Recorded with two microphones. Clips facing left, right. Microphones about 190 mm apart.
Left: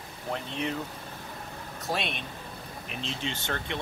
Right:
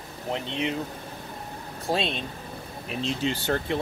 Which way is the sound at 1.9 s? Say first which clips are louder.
Right 5 dB; 30° right (ahead or behind).